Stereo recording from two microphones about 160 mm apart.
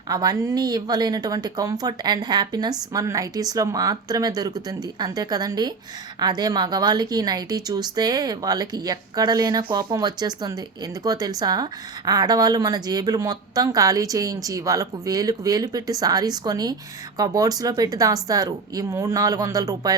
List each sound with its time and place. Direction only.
0.1 s speech: 25° right (ahead or behind)